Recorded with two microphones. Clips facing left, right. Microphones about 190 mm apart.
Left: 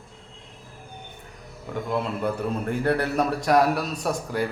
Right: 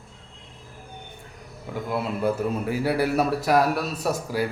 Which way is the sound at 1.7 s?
5° right (ahead or behind).